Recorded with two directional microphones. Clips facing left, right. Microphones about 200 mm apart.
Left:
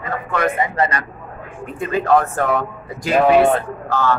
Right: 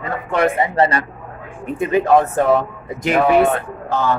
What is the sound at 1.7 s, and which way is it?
Speech, 20° right (ahead or behind).